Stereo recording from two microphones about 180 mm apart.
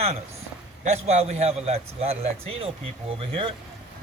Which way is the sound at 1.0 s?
35° right (ahead or behind).